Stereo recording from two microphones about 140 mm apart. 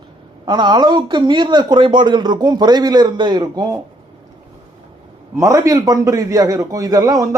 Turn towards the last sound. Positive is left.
turn(degrees=-25)  # may be behind; listen again after turning